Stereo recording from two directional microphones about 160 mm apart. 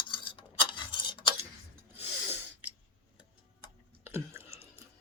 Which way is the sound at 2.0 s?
10° right (ahead or behind).